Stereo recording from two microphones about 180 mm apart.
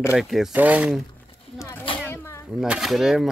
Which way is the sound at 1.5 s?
15° left (ahead or behind).